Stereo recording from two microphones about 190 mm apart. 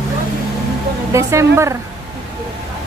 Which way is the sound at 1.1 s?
15° right (ahead or behind).